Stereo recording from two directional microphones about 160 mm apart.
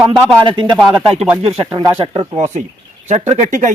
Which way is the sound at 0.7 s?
5° right (ahead or behind).